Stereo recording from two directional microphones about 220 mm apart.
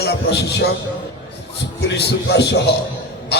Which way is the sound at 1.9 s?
50° left (ahead or behind).